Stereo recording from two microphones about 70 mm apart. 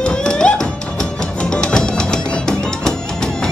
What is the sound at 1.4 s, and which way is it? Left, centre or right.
Music, centre.